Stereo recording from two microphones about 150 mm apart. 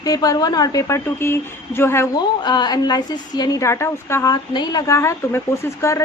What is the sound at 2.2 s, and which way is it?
A woman's voice, 30° left (ahead or behind).